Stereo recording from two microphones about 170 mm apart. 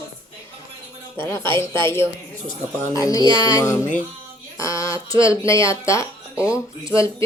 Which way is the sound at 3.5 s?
15° left (ahead or behind).